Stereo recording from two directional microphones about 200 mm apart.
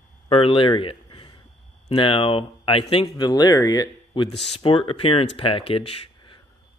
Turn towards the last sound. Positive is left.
turn(degrees=30)  # may be behind; listen again after turning